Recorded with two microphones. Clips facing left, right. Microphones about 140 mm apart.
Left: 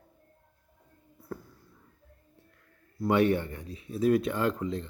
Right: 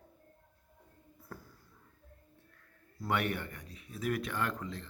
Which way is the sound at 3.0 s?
25° left (ahead or behind).